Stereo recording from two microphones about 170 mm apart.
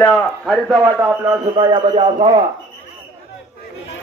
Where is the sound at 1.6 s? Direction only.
30° right (ahead or behind).